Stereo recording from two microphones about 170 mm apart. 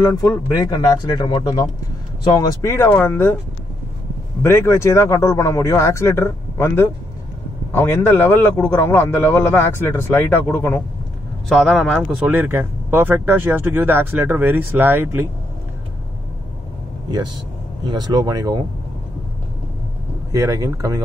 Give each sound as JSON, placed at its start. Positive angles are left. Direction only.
{"t": 0.7, "sound": "a man's voice", "side_deg": 25}
{"t": 4.4, "sound": "a man's voice", "side_deg": 15}
{"t": 11.4, "sound": "speech", "side_deg": 5}
{"t": 17.8, "sound": "speech", "side_deg": -25}
{"t": 20.2, "sound": "speech", "side_deg": -20}